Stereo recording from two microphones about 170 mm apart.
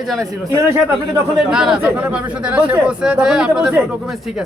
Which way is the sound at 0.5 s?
15° right (ahead or behind).